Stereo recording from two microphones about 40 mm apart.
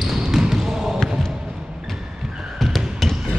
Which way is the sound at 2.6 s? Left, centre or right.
Centre.